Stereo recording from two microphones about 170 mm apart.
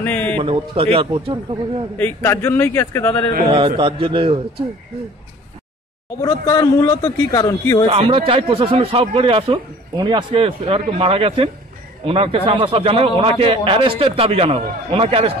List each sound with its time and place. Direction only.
0.0 s a sound: 10° left (ahead or behind)
0.4 s speech: 35° right (ahead or behind)
2.0 s a man's voice: 15° left (ahead or behind)
3.4 s speech: 30° right (ahead or behind)
6.2 s a man's voice: 20° left (ahead or behind)
7.9 s speech: 30° right (ahead or behind)